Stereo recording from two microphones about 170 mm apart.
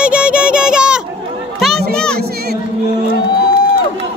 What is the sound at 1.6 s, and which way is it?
Children playing, centre (ahead or behind).